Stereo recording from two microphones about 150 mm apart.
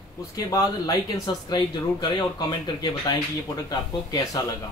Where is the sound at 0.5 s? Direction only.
25° left (ahead or behind).